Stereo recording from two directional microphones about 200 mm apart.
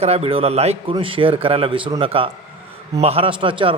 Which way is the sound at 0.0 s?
30° right (ahead or behind).